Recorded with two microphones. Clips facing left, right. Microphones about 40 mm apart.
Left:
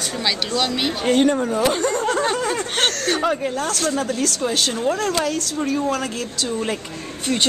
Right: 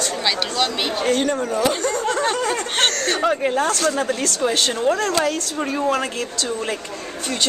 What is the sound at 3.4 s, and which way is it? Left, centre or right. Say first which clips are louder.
Speech: right 4 dB; right.